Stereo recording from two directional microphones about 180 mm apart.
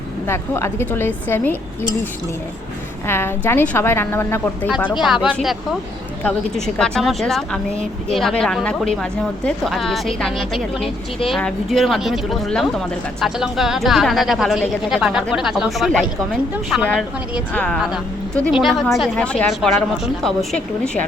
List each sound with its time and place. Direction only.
0.3 s a woman's voice: 15° left (ahead or behind)
3.1 s a woman's voice: 15° left (ahead or behind)
4.9 s a woman's voice: centre (ahead or behind)
17.5 s a woman's voice: 5° left (ahead or behind)